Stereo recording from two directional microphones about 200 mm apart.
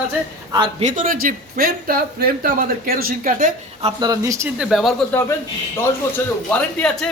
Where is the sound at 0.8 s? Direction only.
40° right (ahead or behind).